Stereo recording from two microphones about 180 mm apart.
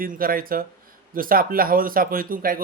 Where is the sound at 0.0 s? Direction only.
50° right (ahead or behind).